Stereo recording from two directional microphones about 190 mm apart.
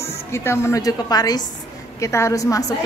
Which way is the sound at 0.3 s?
15° left (ahead or behind).